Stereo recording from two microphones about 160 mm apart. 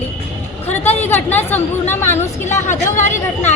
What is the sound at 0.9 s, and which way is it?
A woman's voice, 10° left (ahead or behind).